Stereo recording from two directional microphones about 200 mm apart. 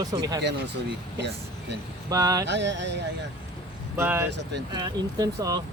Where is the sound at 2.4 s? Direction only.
60° right (ahead or behind).